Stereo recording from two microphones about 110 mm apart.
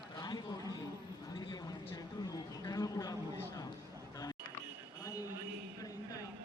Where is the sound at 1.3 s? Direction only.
45° left (ahead or behind).